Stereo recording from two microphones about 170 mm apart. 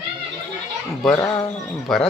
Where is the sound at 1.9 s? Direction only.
Centre (ahead or behind).